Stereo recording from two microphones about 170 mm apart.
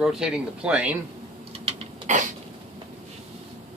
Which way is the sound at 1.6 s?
45° right (ahead or behind).